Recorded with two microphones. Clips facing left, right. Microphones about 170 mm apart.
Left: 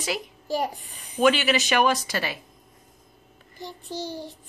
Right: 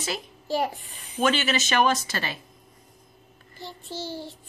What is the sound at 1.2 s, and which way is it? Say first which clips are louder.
A child's voice: left 3 dB; 15° left (ahead or behind).